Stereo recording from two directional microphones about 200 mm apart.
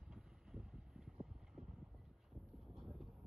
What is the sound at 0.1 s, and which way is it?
Vehicle, 5° right (ahead or behind).